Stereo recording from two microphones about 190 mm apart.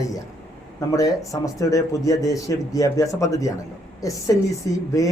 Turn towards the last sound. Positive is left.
turn(degrees=15)  # may be behind; listen again after turning